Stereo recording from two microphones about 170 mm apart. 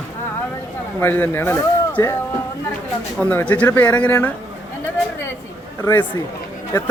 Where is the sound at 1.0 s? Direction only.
15° left (ahead or behind).